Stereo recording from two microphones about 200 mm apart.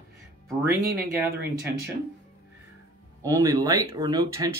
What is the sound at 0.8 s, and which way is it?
Speech, 50° right (ahead or behind).